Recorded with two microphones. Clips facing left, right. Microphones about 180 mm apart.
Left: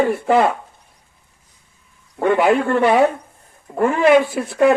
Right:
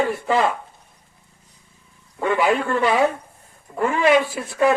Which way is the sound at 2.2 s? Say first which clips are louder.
Left 4 dB; 55° left (ahead or behind).